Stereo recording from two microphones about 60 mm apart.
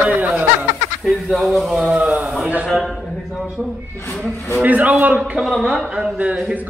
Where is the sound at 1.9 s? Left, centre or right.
Centre.